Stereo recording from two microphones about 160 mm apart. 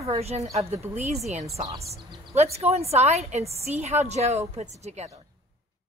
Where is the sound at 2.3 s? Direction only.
40° right (ahead or behind).